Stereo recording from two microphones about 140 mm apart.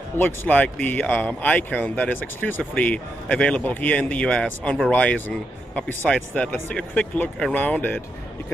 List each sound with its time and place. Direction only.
0.2 s speech: 15° left (ahead or behind)